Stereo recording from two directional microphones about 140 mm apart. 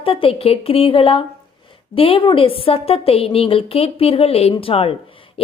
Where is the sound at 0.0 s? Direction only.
40° left (ahead or behind).